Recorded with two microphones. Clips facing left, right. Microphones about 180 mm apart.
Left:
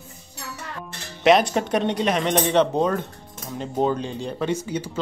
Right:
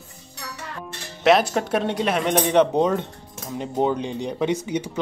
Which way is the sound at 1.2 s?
5° right (ahead or behind).